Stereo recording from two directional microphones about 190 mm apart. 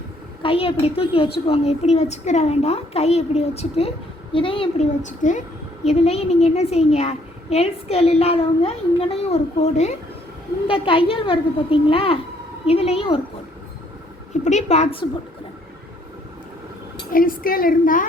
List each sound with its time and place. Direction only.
0.4 s a woman's voice: 30° left (ahead or behind)
14.4 s a woman's voice: 35° left (ahead or behind)
17.1 s a woman's voice: 45° left (ahead or behind)